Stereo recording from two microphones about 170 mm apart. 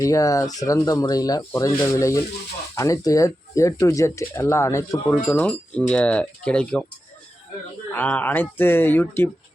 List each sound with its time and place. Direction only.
0.0 s speech: 20° left (ahead or behind)
7.9 s speech: 10° left (ahead or behind)